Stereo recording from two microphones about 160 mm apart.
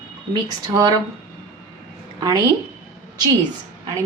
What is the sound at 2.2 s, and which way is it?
Speech, 25° right (ahead or behind).